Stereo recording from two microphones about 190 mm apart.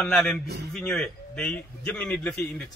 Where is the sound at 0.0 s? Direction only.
Centre (ahead or behind).